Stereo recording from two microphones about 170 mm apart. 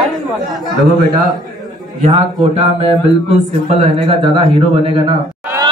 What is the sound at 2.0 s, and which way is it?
Speech, 40° right (ahead or behind).